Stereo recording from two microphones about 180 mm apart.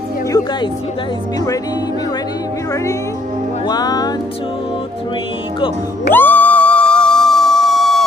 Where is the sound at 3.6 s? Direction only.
20° left (ahead or behind).